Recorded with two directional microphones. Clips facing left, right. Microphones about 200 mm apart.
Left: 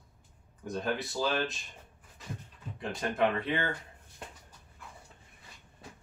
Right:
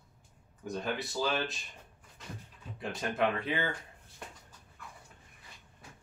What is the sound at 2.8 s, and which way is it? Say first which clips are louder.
Speech: left 2 dB; centre (ahead or behind).